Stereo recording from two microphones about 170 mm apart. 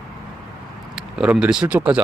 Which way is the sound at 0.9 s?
5° right (ahead or behind).